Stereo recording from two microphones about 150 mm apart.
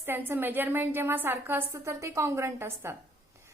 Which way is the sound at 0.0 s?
15° right (ahead or behind).